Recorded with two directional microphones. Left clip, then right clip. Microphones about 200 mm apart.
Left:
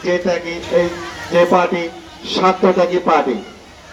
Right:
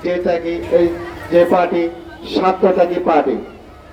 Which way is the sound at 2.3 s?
25° left (ahead or behind).